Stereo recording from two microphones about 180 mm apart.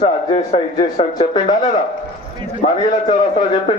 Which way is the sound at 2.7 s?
25° left (ahead or behind).